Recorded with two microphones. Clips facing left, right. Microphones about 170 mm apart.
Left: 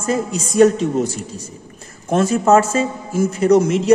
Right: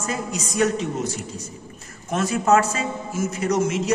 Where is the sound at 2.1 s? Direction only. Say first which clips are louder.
Left 5 dB; 30° left (ahead or behind).